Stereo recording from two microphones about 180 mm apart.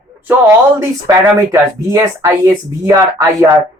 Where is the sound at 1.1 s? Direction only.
15° right (ahead or behind).